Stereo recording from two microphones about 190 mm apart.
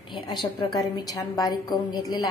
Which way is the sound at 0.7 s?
20° left (ahead or behind).